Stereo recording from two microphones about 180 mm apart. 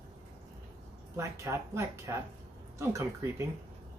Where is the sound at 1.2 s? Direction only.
15° right (ahead or behind).